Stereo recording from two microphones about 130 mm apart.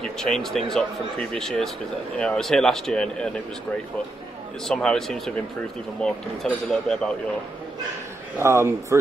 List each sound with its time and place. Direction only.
0.0 s speech: 5° left (ahead or behind)
4.6 s speech: 5° left (ahead or behind)
8.4 s speech: 20° right (ahead or behind)